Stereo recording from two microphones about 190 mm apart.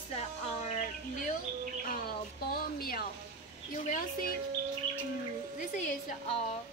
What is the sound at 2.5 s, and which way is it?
Speech, 50° left (ahead or behind).